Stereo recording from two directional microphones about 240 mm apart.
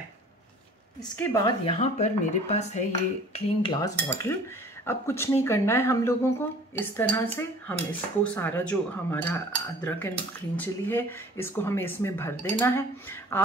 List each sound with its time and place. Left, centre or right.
1.1 s speech: centre
1.8 s speech: left; by 13.4 s centre